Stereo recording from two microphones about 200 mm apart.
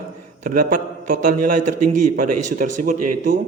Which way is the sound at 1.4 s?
40° right (ahead or behind).